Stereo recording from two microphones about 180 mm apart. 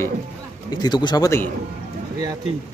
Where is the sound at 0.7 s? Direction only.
25° left (ahead or behind).